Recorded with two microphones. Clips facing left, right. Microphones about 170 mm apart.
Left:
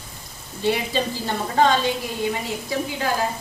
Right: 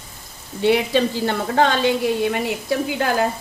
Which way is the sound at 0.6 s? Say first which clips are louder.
Right 5 dB; 65° right (ahead or behind).